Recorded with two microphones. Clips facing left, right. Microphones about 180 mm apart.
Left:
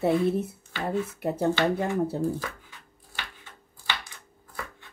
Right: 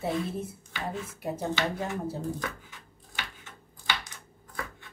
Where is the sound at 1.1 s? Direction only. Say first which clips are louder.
Left 5 dB; 60° left (ahead or behind).